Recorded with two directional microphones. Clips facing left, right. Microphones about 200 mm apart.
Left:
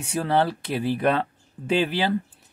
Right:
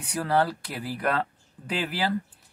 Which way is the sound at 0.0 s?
25° left (ahead or behind).